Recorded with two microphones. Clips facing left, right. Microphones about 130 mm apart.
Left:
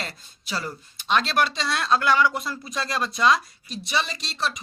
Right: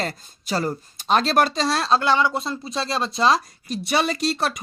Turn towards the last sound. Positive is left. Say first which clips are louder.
# right 7 dB
turn(degrees=-55)  # may be behind; listen again after turning